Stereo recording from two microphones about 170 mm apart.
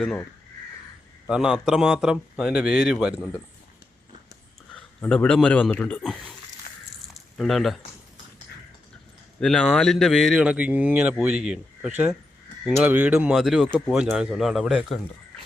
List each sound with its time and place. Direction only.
1.3 s speech: 5° right (ahead or behind)
4.9 s speech: 5° left (ahead or behind)
6.7 s a sound: 50° left (ahead or behind)
7.1 s squish: centre (ahead or behind)
9.4 s speech: 5° left (ahead or behind)